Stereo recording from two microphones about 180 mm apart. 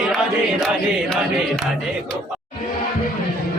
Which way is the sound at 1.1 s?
5° left (ahead or behind).